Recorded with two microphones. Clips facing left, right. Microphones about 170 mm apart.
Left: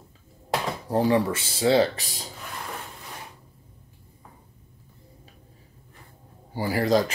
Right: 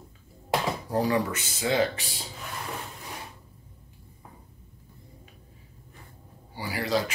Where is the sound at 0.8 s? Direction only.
30° left (ahead or behind).